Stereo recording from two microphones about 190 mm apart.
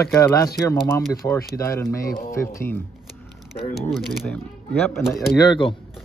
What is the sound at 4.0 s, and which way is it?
Speech, centre (ahead or behind).